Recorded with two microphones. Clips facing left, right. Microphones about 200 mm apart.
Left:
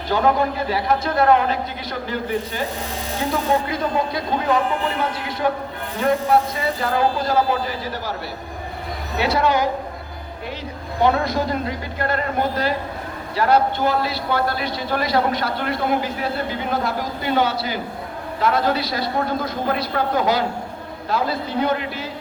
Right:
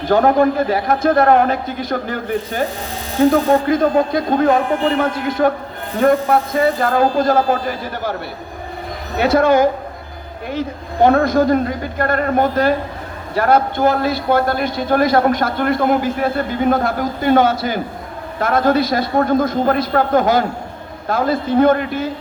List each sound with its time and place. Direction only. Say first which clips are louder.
0.1 s a man's voice: right 6 dB; 50° right (ahead or behind)
9.1 s a man's voice: right 6 dB; 50° right (ahead or behind)